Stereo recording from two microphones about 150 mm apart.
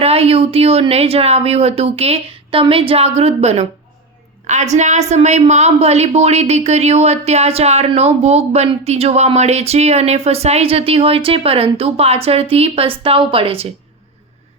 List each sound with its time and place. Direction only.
0.0 s a woman's voice: 40° right (ahead or behind)